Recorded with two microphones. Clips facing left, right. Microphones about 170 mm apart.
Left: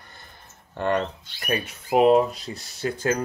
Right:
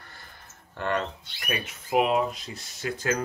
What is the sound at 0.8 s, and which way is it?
Speech, 35° left (ahead or behind).